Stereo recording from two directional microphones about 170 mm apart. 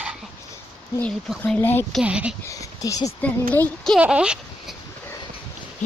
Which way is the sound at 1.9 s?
5° right (ahead or behind).